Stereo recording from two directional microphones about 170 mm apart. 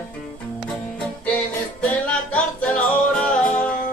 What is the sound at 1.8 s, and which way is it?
Music, 5° left (ahead or behind).